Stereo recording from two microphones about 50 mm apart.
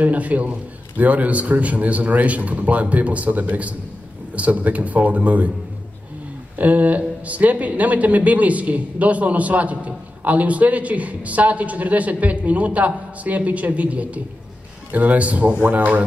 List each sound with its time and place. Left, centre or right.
0.0 s speech: right
6.6 s a man's voice: right